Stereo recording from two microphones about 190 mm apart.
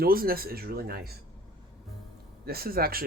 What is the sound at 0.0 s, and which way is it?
Speech, 50° right (ahead or behind).